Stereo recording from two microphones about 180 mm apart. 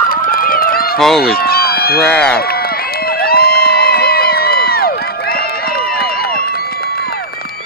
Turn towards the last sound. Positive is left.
turn(degrees=60)  # may be behind; listen again after turning